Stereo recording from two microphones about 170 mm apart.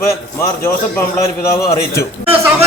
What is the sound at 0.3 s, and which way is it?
A man's voice, 15° left (ahead or behind).